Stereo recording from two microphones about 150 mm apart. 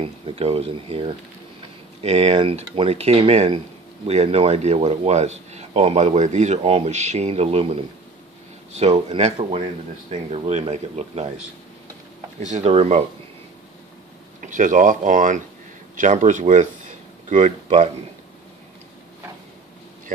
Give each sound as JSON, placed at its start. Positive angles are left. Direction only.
{"t": 0.0, "sound": "a man's voice", "side_deg": -40}
{"t": 9.1, "sound": "a man's voice", "side_deg": -45}
{"t": 14.4, "sound": "speech", "side_deg": -60}